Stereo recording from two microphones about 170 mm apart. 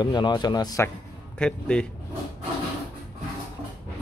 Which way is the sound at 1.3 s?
5° left (ahead or behind).